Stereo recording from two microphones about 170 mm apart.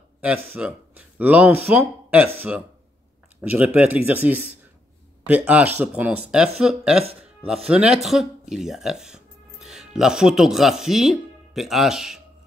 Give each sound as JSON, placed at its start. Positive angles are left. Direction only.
{"t": 0.2, "sound": "speech", "side_deg": -5}